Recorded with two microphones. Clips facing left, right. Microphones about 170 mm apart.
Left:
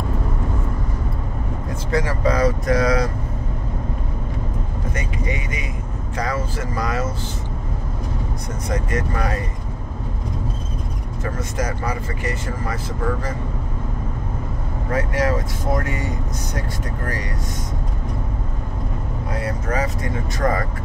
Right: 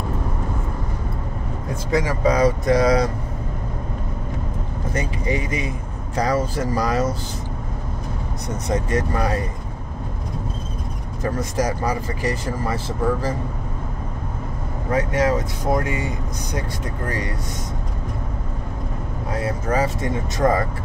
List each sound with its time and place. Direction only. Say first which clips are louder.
1.9 s speech: right 1 dB; 15° right (ahead or behind)
4.9 s speech: right 5 dB; 35° right (ahead or behind)
11.5 s speech: right 2 dB; 35° right (ahead or behind)
14.9 s speech: right 2 dB; 20° right (ahead or behind)
19.4 s speech: right 3 dB; 25° right (ahead or behind)